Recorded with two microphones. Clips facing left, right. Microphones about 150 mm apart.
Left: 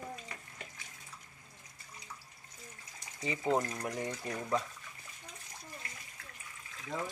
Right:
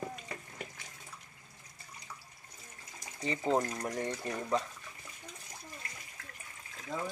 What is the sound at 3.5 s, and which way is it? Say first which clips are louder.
Speech: right 1 dB; 15° right (ahead or behind).